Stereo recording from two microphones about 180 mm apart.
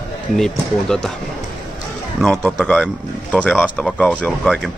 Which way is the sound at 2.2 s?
5° left (ahead or behind).